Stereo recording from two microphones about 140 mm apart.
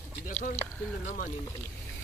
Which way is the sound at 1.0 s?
80° left.